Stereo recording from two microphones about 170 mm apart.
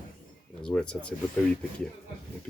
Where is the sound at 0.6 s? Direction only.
5° left (ahead or behind).